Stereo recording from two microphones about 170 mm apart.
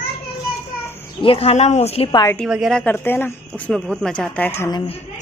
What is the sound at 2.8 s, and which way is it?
Speech, 10° left (ahead or behind).